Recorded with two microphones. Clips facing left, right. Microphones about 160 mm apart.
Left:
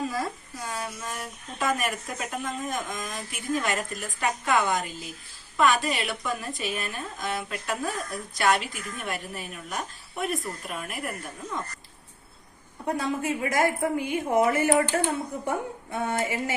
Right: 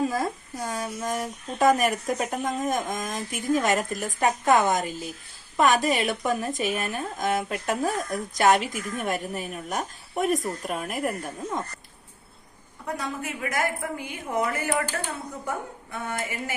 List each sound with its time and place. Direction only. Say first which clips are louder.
0.6 s speech: right 4 dB; 45° right (ahead or behind)
12.8 s a woman's voice: left 4 dB; 30° left (ahead or behind)